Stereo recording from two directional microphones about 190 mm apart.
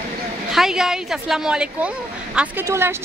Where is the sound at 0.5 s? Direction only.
Centre (ahead or behind).